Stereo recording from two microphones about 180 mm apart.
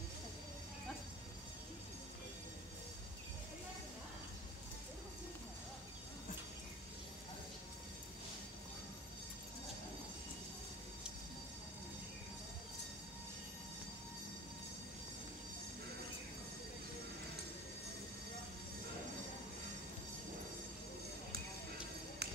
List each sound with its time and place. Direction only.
22.2 s music: 65° right (ahead or behind)